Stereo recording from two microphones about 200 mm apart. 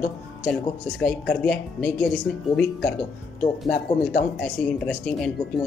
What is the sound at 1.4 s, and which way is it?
Speech, 5° left (ahead or behind).